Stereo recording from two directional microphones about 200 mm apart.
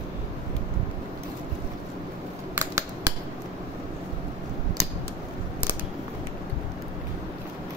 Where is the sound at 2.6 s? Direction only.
15° right (ahead or behind).